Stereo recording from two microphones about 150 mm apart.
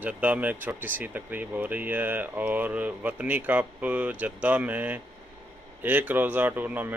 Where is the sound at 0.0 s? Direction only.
10° right (ahead or behind).